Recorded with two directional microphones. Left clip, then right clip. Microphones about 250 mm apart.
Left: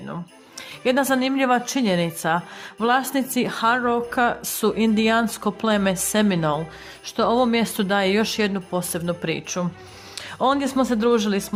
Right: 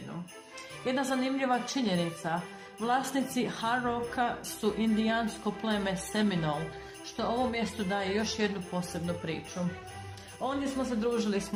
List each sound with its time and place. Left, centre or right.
0.9 s a woman's voice: left
10.4 s a woman's voice: left